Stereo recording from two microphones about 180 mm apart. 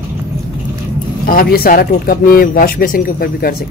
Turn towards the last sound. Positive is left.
turn(degrees=55)  # may be behind; listen again after turning